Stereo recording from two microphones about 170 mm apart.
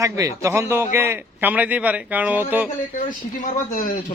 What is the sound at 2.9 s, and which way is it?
Speech, 45° left (ahead or behind).